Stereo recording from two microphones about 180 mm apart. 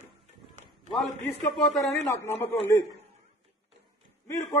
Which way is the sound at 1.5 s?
5° left (ahead or behind).